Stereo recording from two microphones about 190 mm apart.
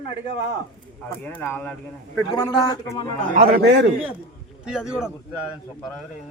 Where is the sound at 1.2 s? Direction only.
10° left (ahead or behind).